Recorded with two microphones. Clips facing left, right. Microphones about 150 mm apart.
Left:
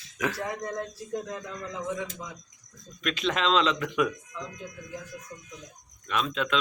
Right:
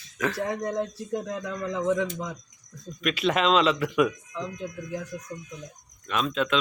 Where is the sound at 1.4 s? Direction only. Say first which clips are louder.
Right 7 dB; 80° right.